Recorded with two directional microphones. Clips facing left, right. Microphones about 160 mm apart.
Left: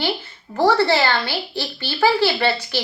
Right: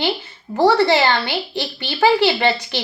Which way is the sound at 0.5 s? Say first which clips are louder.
Right 2 dB; 15° right (ahead or behind).